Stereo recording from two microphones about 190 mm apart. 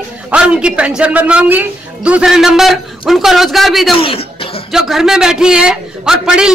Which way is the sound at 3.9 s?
30° left (ahead or behind).